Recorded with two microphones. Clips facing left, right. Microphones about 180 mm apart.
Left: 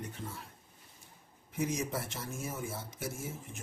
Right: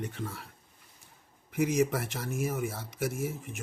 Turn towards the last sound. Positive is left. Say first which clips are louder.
# right 7 dB
turn(degrees=-70)  # may be behind; listen again after turning